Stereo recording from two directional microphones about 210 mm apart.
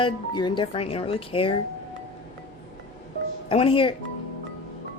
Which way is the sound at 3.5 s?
25° left (ahead or behind).